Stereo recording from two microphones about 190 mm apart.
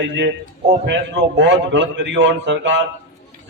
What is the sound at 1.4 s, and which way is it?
A man's voice, 70° right (ahead or behind).